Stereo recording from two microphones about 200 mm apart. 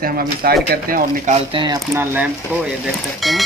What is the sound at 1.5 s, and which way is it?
Speech, 25° right (ahead or behind).